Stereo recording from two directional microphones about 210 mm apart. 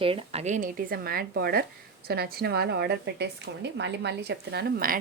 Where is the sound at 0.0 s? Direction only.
25° right (ahead or behind).